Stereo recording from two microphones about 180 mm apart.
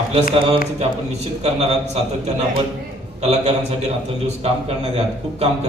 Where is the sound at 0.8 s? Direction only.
35° right (ahead or behind).